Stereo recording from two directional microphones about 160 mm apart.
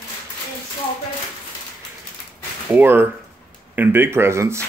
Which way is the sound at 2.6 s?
10° right (ahead or behind).